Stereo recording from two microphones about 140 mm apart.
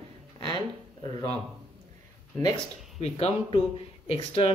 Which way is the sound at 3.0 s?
45° left (ahead or behind).